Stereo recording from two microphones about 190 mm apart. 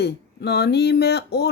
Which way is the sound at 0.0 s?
60° left (ahead or behind).